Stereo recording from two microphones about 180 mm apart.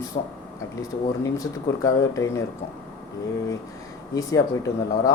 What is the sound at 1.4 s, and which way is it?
Speech, 20° left (ahead or behind).